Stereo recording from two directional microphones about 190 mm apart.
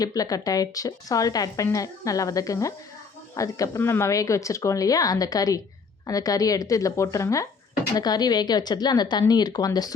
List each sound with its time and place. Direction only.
0.0 s a woman's voice: 20° left (ahead or behind)